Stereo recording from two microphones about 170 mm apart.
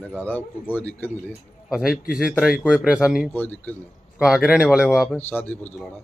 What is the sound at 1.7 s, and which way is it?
A man's voice, 5° right (ahead or behind).